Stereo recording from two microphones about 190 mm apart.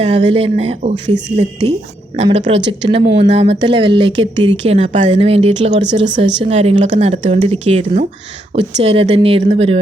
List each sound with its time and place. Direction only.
0.0 s speech: 30° right (ahead or behind)
2.6 s a woman's voice: 70° right (ahead or behind)
3.2 s speech: 30° right (ahead or behind)